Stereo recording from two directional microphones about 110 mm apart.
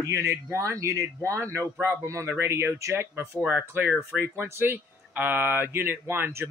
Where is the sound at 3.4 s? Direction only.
10° right (ahead or behind).